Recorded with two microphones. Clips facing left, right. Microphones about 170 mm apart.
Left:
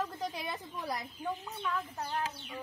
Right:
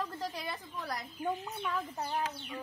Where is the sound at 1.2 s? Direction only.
15° right (ahead or behind).